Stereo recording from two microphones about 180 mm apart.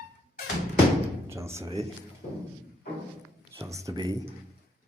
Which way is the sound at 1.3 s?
15° right (ahead or behind).